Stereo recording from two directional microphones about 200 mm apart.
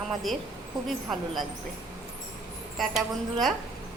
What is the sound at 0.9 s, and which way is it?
Speech, centre (ahead or behind).